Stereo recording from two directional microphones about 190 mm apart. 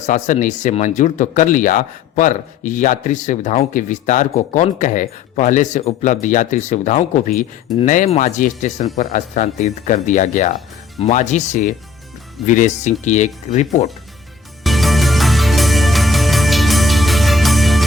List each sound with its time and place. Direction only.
0.0 s speech: 40° left (ahead or behind)
14.6 s music: centre (ahead or behind)